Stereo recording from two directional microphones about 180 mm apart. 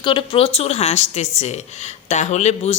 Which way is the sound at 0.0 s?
25° left (ahead or behind).